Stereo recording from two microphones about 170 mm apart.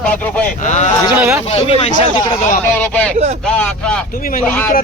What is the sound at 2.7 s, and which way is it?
Speech, 10° left (ahead or behind).